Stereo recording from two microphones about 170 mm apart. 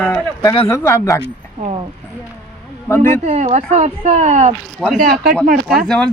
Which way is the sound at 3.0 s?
45° right (ahead or behind).